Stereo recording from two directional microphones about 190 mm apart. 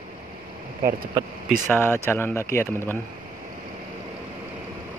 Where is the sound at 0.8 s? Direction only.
50° right (ahead or behind).